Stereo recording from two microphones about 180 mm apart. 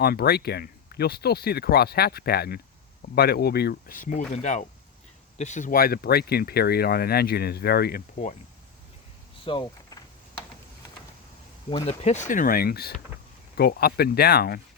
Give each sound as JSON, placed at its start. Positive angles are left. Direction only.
{"t": 0.0, "sound": "speech", "side_deg": 60}
{"t": 9.4, "sound": "a sound", "side_deg": 30}
{"t": 11.7, "sound": "speech", "side_deg": 35}